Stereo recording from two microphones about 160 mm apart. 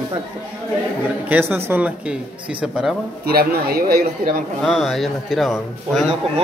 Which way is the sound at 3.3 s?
70° right (ahead or behind).